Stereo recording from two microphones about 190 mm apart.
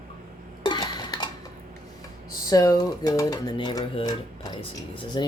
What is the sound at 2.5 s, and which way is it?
Speech, 20° left (ahead or behind).